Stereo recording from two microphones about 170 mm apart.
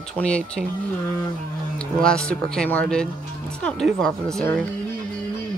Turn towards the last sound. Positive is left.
turn(degrees=5)  # may be behind; listen again after turning